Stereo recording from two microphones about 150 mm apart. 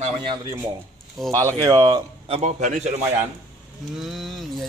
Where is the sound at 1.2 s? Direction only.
Centre (ahead or behind).